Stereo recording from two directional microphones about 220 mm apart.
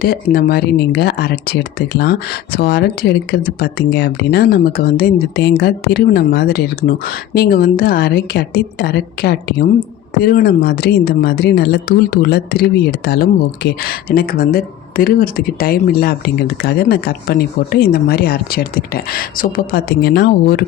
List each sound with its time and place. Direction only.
0.0 s speech: 45° left (ahead or behind)